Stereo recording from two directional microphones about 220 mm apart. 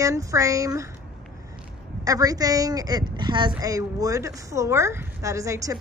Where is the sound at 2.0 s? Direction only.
15° right (ahead or behind).